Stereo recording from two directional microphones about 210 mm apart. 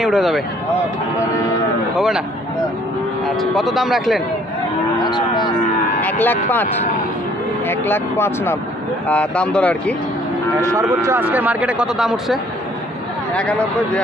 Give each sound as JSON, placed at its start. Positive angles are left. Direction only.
{"t": 0.0, "sound": "speech", "side_deg": 0}
{"t": 2.0, "sound": "speech", "side_deg": 0}
{"t": 3.3, "sound": "speech", "side_deg": 0}
{"t": 5.0, "sound": "cattle", "side_deg": 20}
{"t": 5.9, "sound": "a sound", "side_deg": 10}
{"t": 7.6, "sound": "speech", "side_deg": 10}
{"t": 10.6, "sound": "speech", "side_deg": -15}